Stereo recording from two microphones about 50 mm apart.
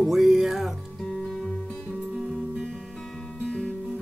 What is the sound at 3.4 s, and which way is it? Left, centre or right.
Music, left.